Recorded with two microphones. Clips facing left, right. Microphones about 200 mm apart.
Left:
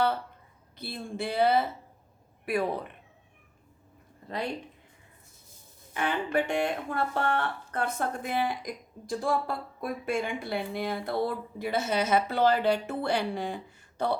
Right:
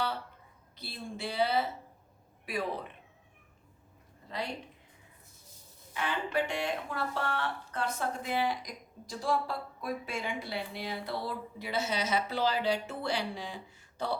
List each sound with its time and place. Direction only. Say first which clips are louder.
0.8 s speech: left 5 dB; 55° left (ahead or behind)
5.9 s speech: left 5 dB; 55° left (ahead or behind)